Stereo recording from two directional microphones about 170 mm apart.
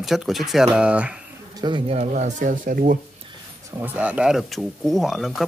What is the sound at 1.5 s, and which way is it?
Speech, 25° right (ahead or behind).